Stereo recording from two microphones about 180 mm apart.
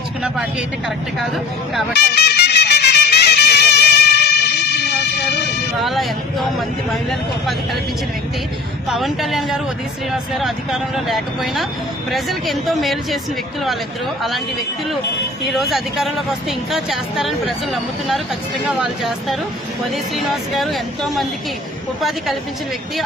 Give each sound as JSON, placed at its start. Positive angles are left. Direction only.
{"t": 1.9, "sound": "music", "side_deg": 65}
{"t": 5.8, "sound": "speech", "side_deg": 0}
{"t": 7.1, "sound": "speech", "side_deg": 0}
{"t": 8.9, "sound": "speech", "side_deg": 0}
{"t": 14.2, "sound": "speech", "side_deg": 0}
{"t": 15.4, "sound": "speech", "side_deg": 0}